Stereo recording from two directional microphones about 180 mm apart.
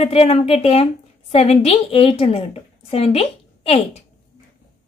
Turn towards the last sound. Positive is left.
turn(degrees=35)  # may be behind; listen again after turning